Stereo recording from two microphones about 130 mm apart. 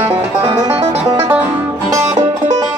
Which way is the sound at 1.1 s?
20° right (ahead or behind).